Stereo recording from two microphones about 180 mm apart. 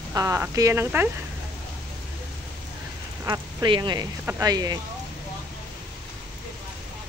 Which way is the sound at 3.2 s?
20° right (ahead or behind).